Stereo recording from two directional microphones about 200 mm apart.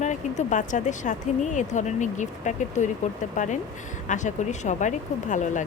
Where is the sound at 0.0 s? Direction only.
35° left (ahead or behind).